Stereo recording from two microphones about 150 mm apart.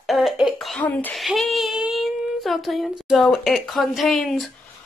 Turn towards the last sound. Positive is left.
turn(degrees=0)  # may be behind; listen again after turning